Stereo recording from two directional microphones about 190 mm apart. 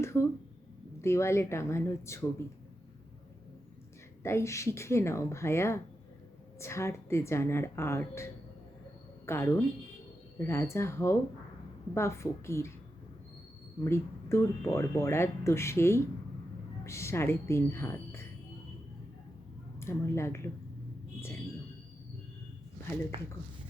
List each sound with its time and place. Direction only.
0.0 s speech: 15° left (ahead or behind)
4.2 s speech: 15° left (ahead or behind)
13.8 s speech: 15° left (ahead or behind)
19.8 s speech: 15° left (ahead or behind)